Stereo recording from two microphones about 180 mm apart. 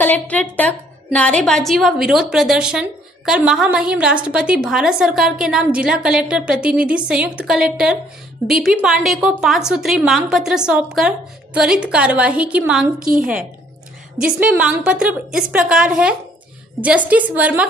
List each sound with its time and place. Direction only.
0.0 s a woman's voice: 10° left (ahead or behind); by 12.9 s 5° right (ahead or behind)
13.0 s a woman's voice: 50° right (ahead or behind)
14.1 s a woman's voice: 5° right (ahead or behind)